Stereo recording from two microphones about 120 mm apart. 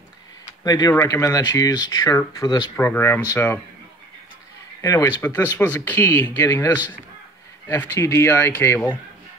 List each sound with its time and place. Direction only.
0.7 s speech: 30° left (ahead or behind)
2.7 s speech: 15° left (ahead or behind)
4.8 s speech: 25° left (ahead or behind)